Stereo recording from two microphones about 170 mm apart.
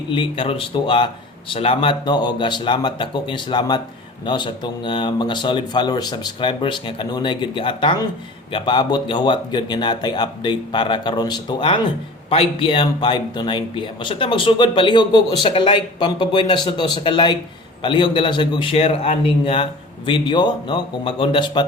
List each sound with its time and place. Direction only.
0.1 s speech: 30° left (ahead or behind)